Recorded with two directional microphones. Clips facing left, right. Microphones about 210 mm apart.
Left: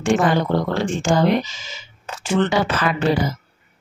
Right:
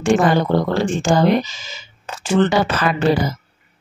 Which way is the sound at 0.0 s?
40° right (ahead or behind).